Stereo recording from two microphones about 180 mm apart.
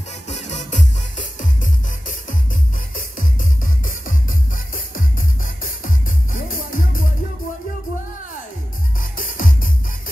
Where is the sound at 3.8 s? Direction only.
50° left (ahead or behind).